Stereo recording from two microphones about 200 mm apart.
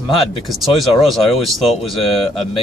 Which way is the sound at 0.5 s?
Centre (ahead or behind).